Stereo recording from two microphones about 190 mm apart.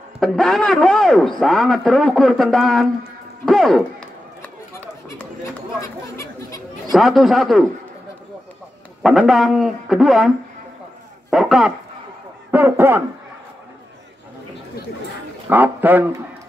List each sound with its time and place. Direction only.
0.2 s a man's voice: centre (ahead or behind)
3.4 s run: centre (ahead or behind)
5.8 s chatter: 15° left (ahead or behind)
6.9 s a man's voice: centre (ahead or behind)
9.0 s a man's voice: centre (ahead or behind)
15.5 s speech: 10° right (ahead or behind)